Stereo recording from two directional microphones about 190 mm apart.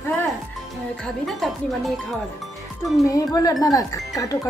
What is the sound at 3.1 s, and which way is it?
Speech, 20° left (ahead or behind).